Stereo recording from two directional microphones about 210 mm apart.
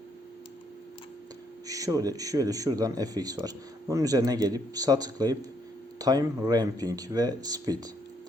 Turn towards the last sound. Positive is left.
turn(degrees=-20)  # may be behind; listen again after turning